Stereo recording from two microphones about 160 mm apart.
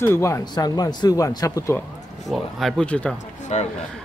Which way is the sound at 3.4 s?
45° left (ahead or behind).